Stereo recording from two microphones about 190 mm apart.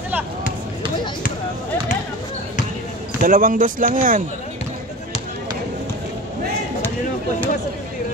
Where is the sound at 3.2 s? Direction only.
45° right (ahead or behind).